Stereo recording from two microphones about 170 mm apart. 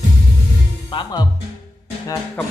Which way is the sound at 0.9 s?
25° left (ahead or behind).